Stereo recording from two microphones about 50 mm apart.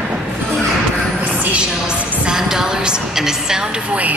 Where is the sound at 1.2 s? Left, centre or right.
Right.